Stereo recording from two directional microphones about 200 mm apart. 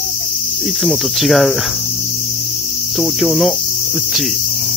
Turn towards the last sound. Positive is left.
turn(degrees=0)  # may be behind; listen again after turning